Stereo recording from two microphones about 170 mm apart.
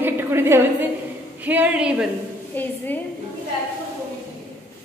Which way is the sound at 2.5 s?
10° left (ahead or behind).